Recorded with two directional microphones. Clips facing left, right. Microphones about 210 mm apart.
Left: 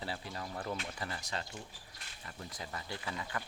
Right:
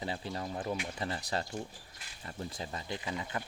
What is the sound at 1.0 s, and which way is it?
Speech, 30° right (ahead or behind).